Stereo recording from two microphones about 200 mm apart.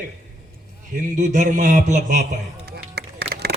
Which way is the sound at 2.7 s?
50° right (ahead or behind).